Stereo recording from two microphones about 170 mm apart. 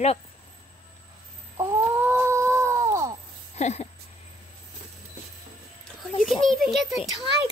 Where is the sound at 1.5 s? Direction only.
15° right (ahead or behind).